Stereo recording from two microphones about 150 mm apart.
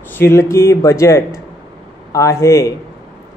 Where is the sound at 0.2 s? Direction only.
20° left (ahead or behind).